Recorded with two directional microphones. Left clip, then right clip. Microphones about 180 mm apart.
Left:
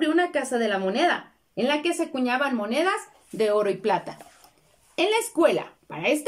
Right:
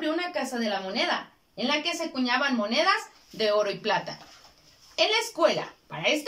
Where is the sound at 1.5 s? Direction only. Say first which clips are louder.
Left 3 dB; 45° left (ahead or behind).